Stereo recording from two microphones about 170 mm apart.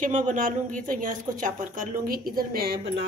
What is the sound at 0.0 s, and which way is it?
A woman's voice, 50° right (ahead or behind).